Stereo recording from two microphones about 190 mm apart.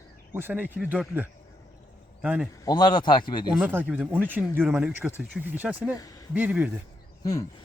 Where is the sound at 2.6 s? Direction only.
20° left (ahead or behind).